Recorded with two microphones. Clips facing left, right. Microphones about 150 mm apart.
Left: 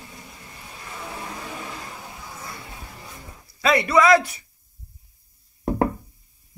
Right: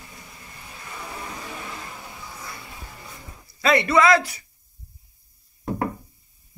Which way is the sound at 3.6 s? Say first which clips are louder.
Even; 10° left (ahead or behind).